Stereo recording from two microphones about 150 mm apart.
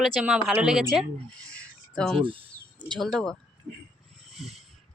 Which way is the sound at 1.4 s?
5° left (ahead or behind).